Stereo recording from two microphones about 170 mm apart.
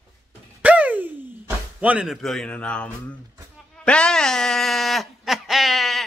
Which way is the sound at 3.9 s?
5° left (ahead or behind).